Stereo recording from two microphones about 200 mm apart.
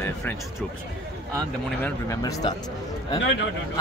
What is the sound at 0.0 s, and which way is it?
Music, 10° left (ahead or behind).